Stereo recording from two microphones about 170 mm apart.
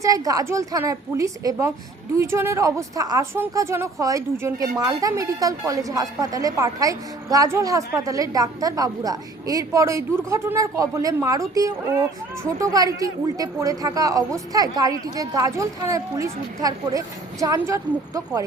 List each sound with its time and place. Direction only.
0.0 s a woman's voice: 20° right (ahead or behind)